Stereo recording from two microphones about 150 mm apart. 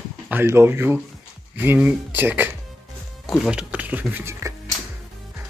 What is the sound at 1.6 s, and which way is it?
Speech, 10° right (ahead or behind).